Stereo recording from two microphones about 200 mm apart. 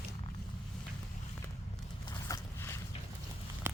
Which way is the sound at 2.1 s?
15° left (ahead or behind).